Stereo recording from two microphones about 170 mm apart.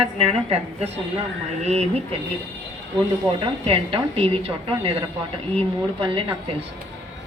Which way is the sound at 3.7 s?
35° right (ahead or behind).